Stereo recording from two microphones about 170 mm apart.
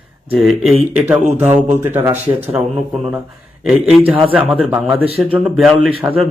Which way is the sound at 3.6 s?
Centre (ahead or behind).